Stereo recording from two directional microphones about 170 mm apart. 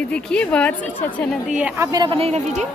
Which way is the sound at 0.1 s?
5° left (ahead or behind).